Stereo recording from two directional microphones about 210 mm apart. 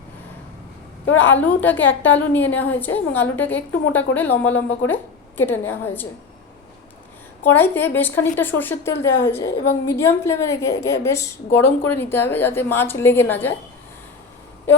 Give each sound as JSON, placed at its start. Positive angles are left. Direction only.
{"t": 1.1, "sound": "a woman's voice", "side_deg": 10}
{"t": 7.4, "sound": "a woman's voice", "side_deg": 10}